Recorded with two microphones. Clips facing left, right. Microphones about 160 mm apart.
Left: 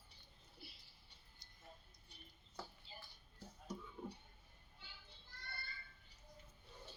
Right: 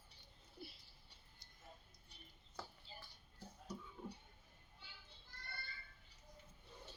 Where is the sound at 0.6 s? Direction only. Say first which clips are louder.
Right 6 dB; 45° right (ahead or behind).